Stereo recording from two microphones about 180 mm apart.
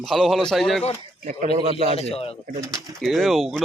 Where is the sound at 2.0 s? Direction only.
35° left (ahead or behind).